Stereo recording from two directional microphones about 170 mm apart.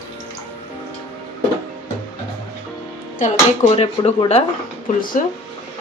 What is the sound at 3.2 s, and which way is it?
Speech, 40° left (ahead or behind).